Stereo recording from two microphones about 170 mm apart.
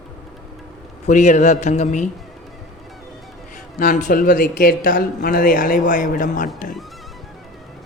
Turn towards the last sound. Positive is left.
turn(degrees=50)  # may be behind; listen again after turning